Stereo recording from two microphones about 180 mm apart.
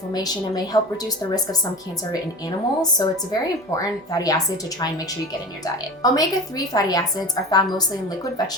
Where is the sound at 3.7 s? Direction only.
20° left (ahead or behind).